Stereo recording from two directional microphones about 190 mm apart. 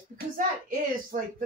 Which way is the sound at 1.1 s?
45° right (ahead or behind).